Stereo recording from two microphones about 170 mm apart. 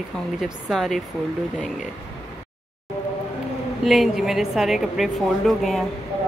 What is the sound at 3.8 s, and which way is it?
A woman's voice, centre (ahead or behind).